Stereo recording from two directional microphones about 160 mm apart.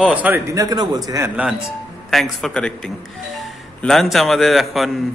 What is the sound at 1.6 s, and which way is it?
Speech, centre (ahead or behind).